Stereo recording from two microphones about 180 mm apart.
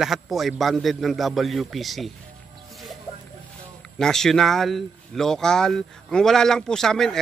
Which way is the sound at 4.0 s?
5° left (ahead or behind).